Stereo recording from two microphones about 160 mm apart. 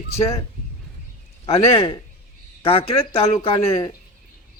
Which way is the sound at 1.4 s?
35° left (ahead or behind).